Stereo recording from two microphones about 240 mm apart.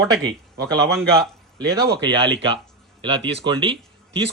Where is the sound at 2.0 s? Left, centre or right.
Right.